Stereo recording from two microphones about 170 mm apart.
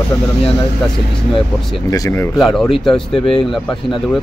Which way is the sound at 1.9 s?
20° left (ahead or behind).